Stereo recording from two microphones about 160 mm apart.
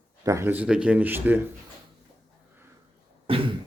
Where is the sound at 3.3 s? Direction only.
35° right (ahead or behind).